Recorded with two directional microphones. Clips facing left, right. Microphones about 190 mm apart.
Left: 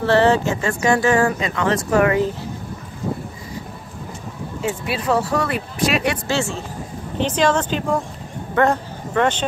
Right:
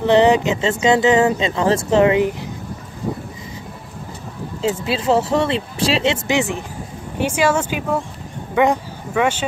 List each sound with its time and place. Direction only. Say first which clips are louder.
0.0 s speech: right 2 dB; 15° right (ahead or behind)
4.6 s speech: right 4 dB; 25° right (ahead or behind); by 9.4 s 10° right (ahead or behind)